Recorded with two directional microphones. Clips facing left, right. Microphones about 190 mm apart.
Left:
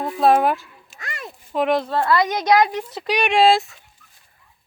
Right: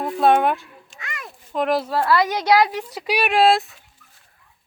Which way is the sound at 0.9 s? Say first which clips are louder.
Left 2 dB; 35° left (ahead or behind).